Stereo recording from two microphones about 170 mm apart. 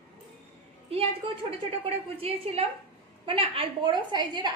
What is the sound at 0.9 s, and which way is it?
A woman's voice, 35° right (ahead or behind).